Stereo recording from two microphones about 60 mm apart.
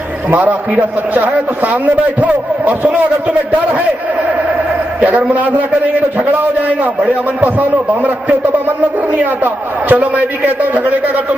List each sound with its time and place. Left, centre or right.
0.3 s a man's voice: right
7.3 s a man's voice: right